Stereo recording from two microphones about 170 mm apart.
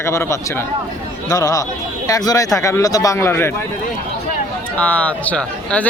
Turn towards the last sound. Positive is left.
turn(degrees=10)  # may be behind; listen again after turning